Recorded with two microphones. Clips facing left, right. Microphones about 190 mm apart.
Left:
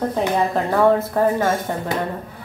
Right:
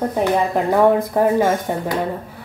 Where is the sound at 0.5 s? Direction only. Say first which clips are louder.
Right 2 dB; 15° right (ahead or behind).